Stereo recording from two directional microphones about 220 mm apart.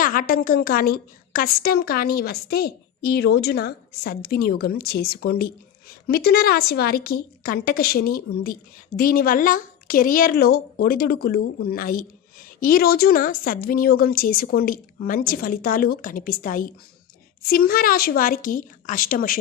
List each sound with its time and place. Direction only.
0.0 s a woman's voice: 40° left (ahead or behind)